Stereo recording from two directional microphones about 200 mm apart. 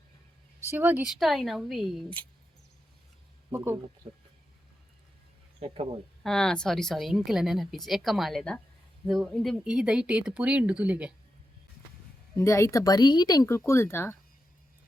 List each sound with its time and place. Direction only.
0.7 s a woman's voice: 10° right (ahead or behind)
3.5 s speech: 10° right (ahead or behind)
4.0 s speech: 25° right (ahead or behind)
5.5 s speech: 30° right (ahead or behind)
6.2 s a woman's voice: 5° left (ahead or behind)
12.4 s speech: 15° left (ahead or behind)